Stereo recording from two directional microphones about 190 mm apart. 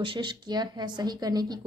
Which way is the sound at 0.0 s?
25° right (ahead or behind).